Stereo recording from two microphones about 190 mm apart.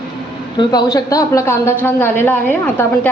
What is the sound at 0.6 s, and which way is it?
A woman's voice, 20° left (ahead or behind).